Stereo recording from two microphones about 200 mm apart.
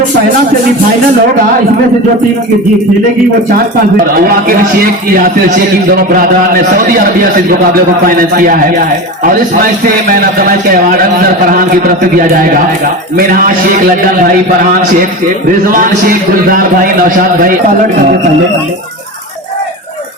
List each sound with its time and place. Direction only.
4.0 s a man's voice: 45° right (ahead or behind)
15.7 s a man's voice: 45° right (ahead or behind)